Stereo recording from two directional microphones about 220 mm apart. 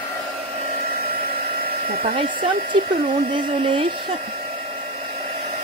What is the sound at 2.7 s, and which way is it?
Speech, 25° right (ahead or behind).